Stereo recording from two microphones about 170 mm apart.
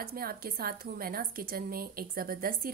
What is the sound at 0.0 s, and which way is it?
A woman's voice, 60° right (ahead or behind).